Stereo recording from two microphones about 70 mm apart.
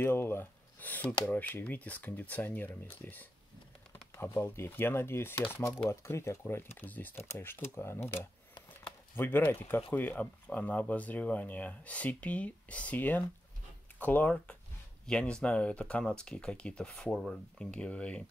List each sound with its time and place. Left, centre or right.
0.0 s speech: left
5.9 s speech: left
15.0 s speech: centre